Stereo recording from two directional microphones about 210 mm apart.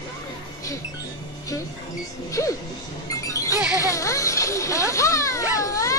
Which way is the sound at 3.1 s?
15° left (ahead or behind).